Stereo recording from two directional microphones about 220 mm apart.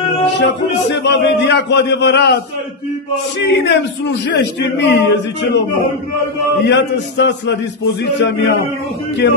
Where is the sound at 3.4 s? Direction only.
50° left (ahead or behind).